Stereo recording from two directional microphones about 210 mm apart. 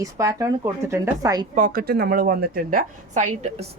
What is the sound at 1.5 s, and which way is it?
A woman's voice, 40° right (ahead or behind).